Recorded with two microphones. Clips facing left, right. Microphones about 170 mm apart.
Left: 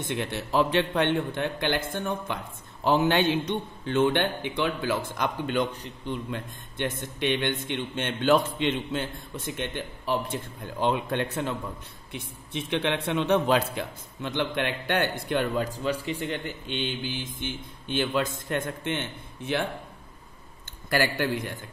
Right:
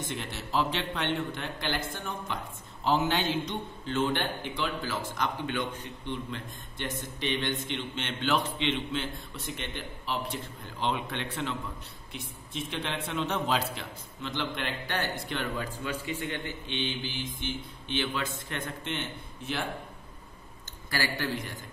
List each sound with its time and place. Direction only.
0.1 s a man's voice: 60° left (ahead or behind); by 6.4 s 45° left (ahead or behind)
6.8 s a man's voice: 60° left (ahead or behind)
12.1 s a man's voice: 65° left (ahead or behind)
20.9 s a man's voice: 55° left (ahead or behind)